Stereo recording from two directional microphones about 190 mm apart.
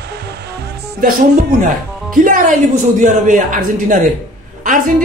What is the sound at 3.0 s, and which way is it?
A man's voice, 40° right (ahead or behind).